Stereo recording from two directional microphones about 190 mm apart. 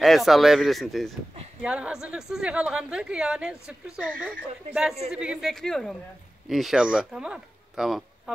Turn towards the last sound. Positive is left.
turn(degrees=0)  # may be behind; listen again after turning